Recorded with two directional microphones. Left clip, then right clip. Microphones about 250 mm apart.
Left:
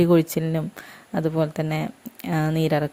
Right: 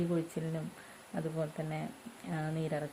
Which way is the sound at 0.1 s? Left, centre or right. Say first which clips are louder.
Left 16 dB; left.